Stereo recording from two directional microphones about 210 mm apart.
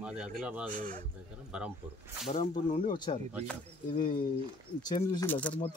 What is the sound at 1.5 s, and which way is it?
Speech, 5° right (ahead or behind).